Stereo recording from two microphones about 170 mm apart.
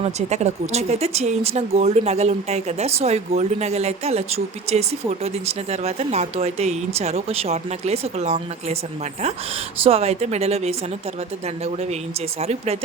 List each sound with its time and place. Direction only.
0.0 s speech: 40° right (ahead or behind)
9.8 s speech: 35° right (ahead or behind)